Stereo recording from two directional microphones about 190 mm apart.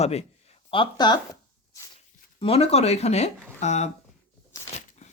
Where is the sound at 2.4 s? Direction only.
30° left (ahead or behind).